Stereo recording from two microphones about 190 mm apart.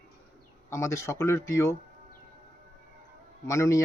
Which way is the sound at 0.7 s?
15° left (ahead or behind).